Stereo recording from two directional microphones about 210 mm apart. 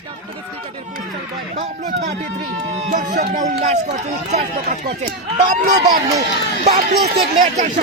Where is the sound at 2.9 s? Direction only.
35° right (ahead or behind).